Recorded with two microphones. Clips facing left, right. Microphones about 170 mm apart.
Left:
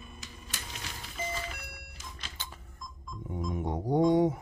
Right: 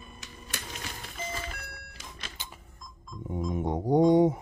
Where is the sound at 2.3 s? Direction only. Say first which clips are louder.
Even; 15° right (ahead or behind).